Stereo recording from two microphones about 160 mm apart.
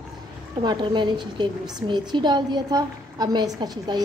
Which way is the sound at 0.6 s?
30° right (ahead or behind).